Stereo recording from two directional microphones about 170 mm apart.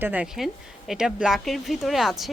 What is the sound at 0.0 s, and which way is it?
Speech, 10° right (ahead or behind).